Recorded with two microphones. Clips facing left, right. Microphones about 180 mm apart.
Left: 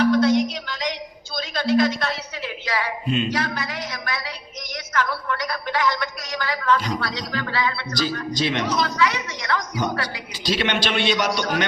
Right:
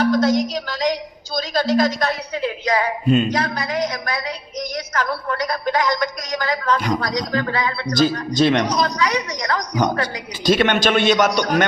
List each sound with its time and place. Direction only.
0.1 s a woman's voice: 40° right (ahead or behind)